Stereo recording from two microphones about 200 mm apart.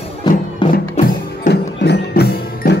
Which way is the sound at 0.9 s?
40° left (ahead or behind).